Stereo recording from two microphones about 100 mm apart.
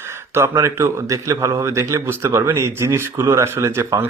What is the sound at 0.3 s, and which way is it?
A man's voice, 30° right (ahead or behind).